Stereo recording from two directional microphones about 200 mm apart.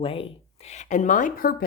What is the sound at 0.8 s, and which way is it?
Speech, 40° left (ahead or behind).